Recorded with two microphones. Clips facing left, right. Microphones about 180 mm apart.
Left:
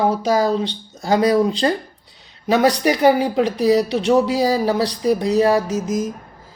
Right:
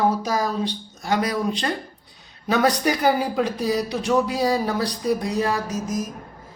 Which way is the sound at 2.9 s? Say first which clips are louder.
Left 5 dB; 25° left (ahead or behind).